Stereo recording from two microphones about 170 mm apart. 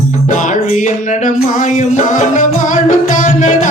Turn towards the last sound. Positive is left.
turn(degrees=45)  # may be behind; listen again after turning